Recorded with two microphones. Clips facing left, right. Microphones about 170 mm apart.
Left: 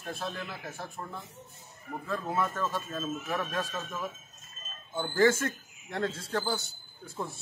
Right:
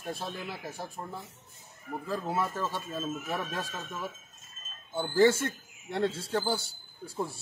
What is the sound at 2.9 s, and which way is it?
Speech, 5° right (ahead or behind).